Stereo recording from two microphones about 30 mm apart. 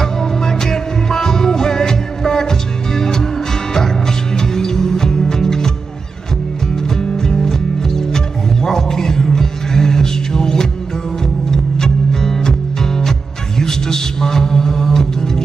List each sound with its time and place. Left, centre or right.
0.0 s music: centre
4.4 s music: centre
7.0 s music: left